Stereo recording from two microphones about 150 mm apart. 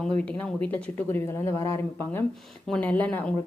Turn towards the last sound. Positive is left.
turn(degrees=10)  # may be behind; listen again after turning